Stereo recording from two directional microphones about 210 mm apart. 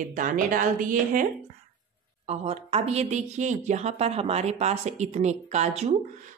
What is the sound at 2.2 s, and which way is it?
Speech, 30° right (ahead or behind).